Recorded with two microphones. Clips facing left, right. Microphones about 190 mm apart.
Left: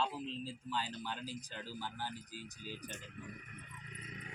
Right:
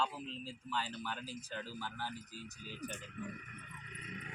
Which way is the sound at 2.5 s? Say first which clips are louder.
Left 2 dB; 35° left (ahead or behind).